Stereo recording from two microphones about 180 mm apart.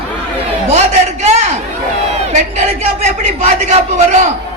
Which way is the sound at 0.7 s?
40° right (ahead or behind).